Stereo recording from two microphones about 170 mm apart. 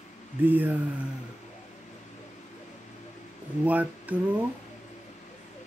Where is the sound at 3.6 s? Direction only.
10° right (ahead or behind).